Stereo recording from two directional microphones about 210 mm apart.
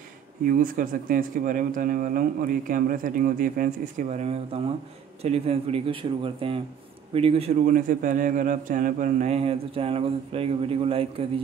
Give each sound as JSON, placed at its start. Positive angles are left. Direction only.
{"t": 0.5, "sound": "speech", "side_deg": -40}
{"t": 4.2, "sound": "a man's voice", "side_deg": -30}